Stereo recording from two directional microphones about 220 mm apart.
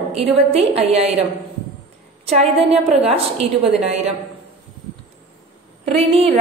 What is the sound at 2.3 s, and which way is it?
A woman's voice, 30° right (ahead or behind).